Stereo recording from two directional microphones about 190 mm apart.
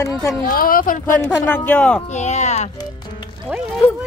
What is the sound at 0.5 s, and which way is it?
Speech, 50° left (ahead or behind).